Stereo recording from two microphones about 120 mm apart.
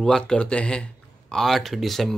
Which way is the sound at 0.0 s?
5° left (ahead or behind).